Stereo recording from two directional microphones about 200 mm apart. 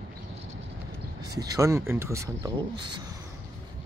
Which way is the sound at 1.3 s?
15° right (ahead or behind).